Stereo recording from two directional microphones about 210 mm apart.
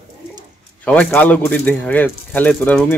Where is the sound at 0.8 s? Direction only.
5° left (ahead or behind).